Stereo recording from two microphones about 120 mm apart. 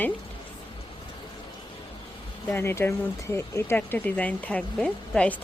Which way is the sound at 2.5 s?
20° left (ahead or behind).